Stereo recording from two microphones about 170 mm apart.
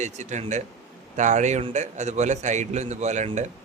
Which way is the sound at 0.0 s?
45° right (ahead or behind).